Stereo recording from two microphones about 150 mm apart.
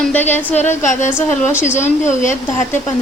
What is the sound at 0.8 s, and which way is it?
Speech, 55° left (ahead or behind).